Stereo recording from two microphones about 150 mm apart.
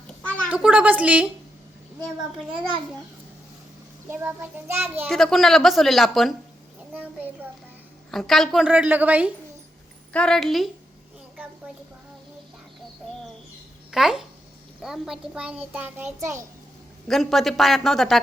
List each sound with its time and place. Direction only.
0.5 s a child's voice: 10° right (ahead or behind)
4.1 s a child's voice: 15° right (ahead or behind)
5.0 s a woman's voice: centre (ahead or behind)
6.9 s a child's voice: 10° right (ahead or behind)
8.1 s a child's voice: centre (ahead or behind)
10.1 s a woman's voice: 5° left (ahead or behind)
13.9 s a woman's voice: centre (ahead or behind)
17.1 s a woman's voice: centre (ahead or behind)